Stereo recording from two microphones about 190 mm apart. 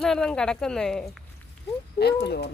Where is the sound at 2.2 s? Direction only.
60° left (ahead or behind).